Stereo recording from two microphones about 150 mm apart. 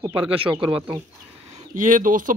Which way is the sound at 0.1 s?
35° right (ahead or behind).